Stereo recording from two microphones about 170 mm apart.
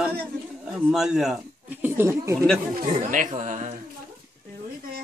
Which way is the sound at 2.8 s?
50° right (ahead or behind).